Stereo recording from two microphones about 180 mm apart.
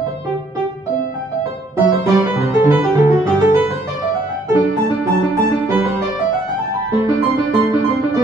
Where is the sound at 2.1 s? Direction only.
10° right (ahead or behind).